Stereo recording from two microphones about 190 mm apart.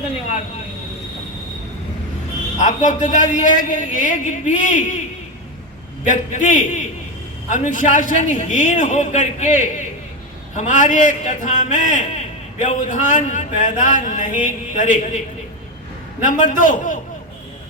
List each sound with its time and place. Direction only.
2.6 s a man's voice: 40° left (ahead or behind)
6.1 s a man's voice: 40° left (ahead or behind)
16.2 s a man's voice: 40° left (ahead or behind)